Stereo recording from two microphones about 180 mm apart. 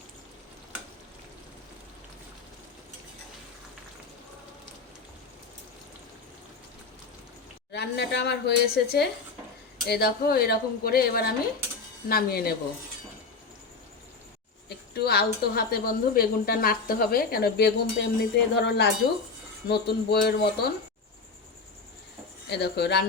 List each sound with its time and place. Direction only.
7.7 s a woman's voice: 70° left (ahead or behind)
14.9 s a woman's voice: 60° left (ahead or behind)
22.4 s a woman's voice: 65° left (ahead or behind)